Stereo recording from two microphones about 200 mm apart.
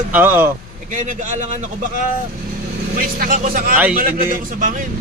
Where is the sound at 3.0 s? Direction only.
45° right (ahead or behind).